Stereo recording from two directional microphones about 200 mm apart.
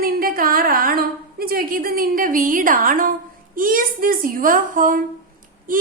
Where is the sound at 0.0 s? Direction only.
45° right (ahead or behind).